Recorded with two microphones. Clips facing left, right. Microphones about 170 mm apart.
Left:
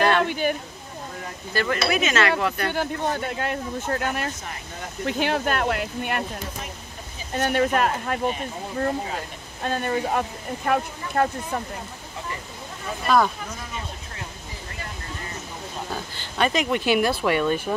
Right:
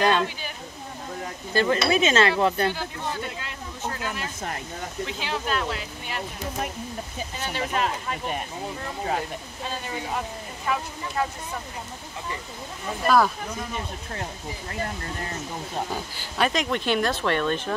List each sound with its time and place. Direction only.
0.2 s a sound: 60° left (ahead or behind)
1.5 s speech: 25° right (ahead or behind)
2.7 s speech: 55° left (ahead or behind)
7.3 s speech: 55° left (ahead or behind)
9.6 s speech: 55° left (ahead or behind)
13.0 s speech: centre (ahead or behind)
15.9 s speech: 5° right (ahead or behind)